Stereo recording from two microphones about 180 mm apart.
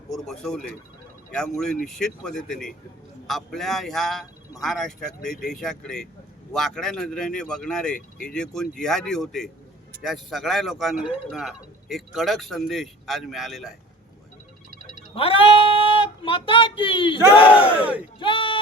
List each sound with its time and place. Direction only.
0.1 s speech: centre (ahead or behind)
15.1 s speech: 30° left (ahead or behind)
17.7 s speech: 10° right (ahead or behind)
18.2 s a sound: 25° left (ahead or behind)